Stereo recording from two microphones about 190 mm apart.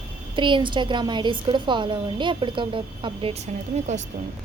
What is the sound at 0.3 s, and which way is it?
A woman's voice, 25° right (ahead or behind).